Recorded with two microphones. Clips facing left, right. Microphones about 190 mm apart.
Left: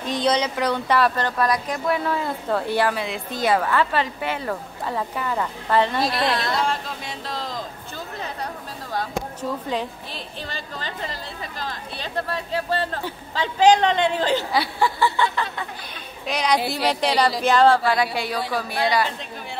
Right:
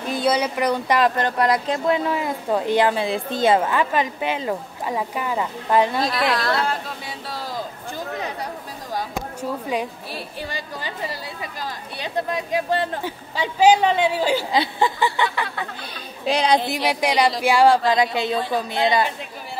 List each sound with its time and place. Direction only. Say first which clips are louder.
0.1 s speech: right 1 dB; 10° right (ahead or behind)
6.1 s speech: right 1 dB; 25° left (ahead or behind)
7.2 s a sound: right 1 dB; 5° right (ahead or behind)
8.9 s speech: even; 10° right (ahead or behind)
14.5 s speech: right 1 dB; 20° right (ahead or behind)
16.3 s speech: right 3 dB; 30° right (ahead or behind)